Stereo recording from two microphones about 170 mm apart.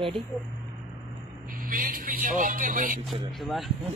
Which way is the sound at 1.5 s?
55° right (ahead or behind).